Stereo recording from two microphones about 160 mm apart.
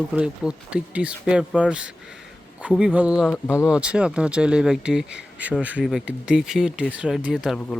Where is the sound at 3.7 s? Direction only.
5° right (ahead or behind).